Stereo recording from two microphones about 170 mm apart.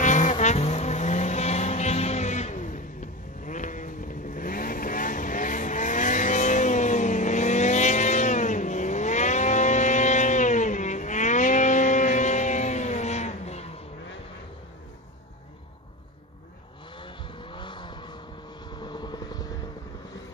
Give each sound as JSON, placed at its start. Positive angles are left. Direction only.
{"t": 0.0, "sound": "vehicle", "side_deg": 45}
{"t": 17.0, "sound": "vehicle", "side_deg": 30}